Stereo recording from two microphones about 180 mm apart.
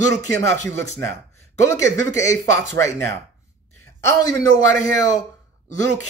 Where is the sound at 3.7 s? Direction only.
15° left (ahead or behind).